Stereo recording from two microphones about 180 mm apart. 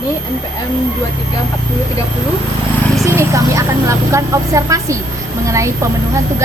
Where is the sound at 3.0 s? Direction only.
15° right (ahead or behind).